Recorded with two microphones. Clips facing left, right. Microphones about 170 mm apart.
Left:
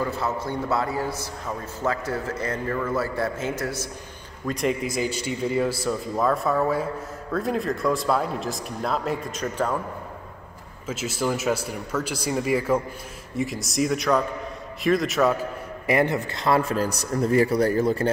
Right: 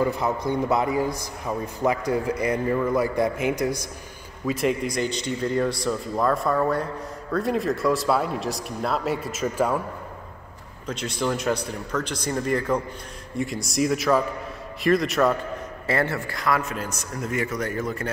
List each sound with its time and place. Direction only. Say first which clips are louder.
0.0 s a man's voice: right 3 dB; 15° right (ahead or behind)
4.5 s speech: right 1 dB; centre (ahead or behind)
10.9 s speech: even; 5° left (ahead or behind)
15.9 s a man's voice: left 3 dB; 15° left (ahead or behind)